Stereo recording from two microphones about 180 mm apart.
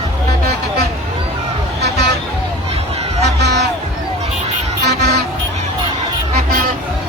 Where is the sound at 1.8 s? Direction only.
65° right (ahead or behind).